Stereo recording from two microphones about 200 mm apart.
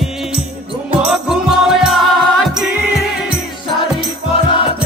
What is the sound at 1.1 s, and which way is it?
Music, 5° right (ahead or behind).